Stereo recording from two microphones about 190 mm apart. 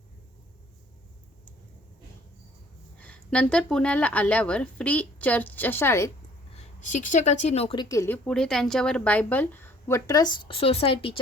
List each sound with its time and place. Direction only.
3.0 s speech: 5° left (ahead or behind)
6.6 s speech: 40° left (ahead or behind)